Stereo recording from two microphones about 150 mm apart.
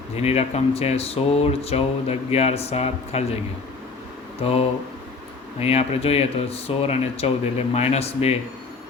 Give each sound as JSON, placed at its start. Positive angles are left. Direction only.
{"t": 0.2, "sound": "speech", "side_deg": 45}